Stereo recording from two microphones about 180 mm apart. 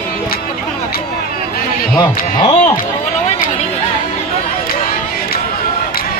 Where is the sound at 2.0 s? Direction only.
20° left (ahead or behind).